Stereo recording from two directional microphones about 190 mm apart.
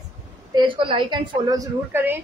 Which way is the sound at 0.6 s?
25° right (ahead or behind).